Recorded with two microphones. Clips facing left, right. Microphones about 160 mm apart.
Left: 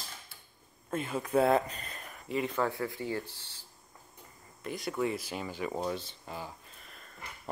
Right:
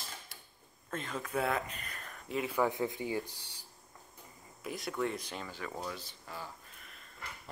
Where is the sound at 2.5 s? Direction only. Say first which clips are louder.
Even; 20° right (ahead or behind).